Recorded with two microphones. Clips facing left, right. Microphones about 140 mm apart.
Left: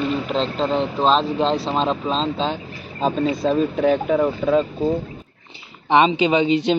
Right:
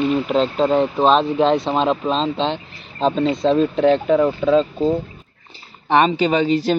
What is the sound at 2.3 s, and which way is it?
Speech, 10° left (ahead or behind).